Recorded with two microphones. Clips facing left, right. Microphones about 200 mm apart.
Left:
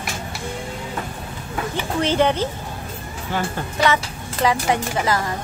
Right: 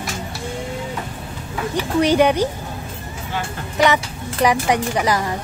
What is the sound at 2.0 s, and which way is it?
Speech, 15° right (ahead or behind).